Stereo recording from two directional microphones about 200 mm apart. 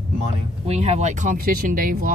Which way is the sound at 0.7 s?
35° right (ahead or behind).